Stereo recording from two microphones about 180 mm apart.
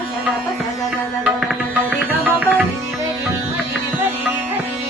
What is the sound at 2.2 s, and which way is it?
Tabla, 10° right (ahead or behind).